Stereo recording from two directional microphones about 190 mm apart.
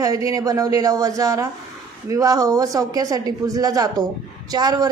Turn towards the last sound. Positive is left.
turn(degrees=-20)  # may be behind; listen again after turning